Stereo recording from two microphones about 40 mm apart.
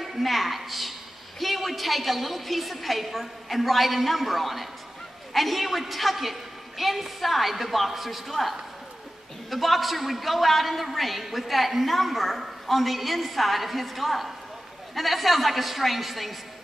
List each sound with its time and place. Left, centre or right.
0.0 s a man's voice: centre